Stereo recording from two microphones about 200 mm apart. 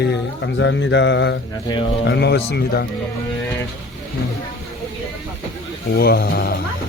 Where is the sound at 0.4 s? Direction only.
65° left (ahead or behind); by 2.8 s 50° left (ahead or behind).